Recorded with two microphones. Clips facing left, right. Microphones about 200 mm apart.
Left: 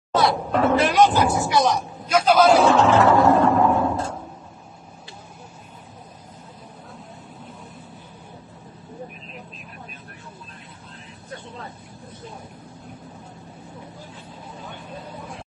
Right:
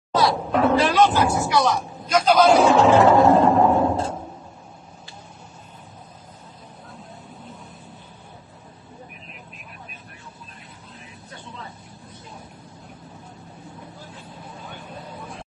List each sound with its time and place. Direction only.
0.1 s cat: centre (ahead or behind)
0.9 s speech: 15° left (ahead or behind)
1.8 s a man's voice: 5° left (ahead or behind)
2.6 s a sound: 15° right (ahead or behind)